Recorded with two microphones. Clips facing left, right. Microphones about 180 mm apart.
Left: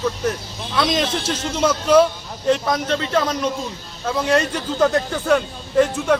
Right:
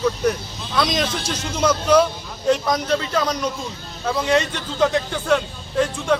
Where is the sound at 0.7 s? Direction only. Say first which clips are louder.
Left 1 dB; 5° left (ahead or behind).